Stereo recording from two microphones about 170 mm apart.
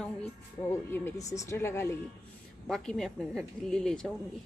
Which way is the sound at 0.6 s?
15° left (ahead or behind).